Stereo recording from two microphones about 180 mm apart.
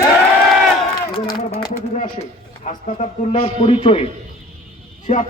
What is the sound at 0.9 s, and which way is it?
Run, 25° left (ahead or behind).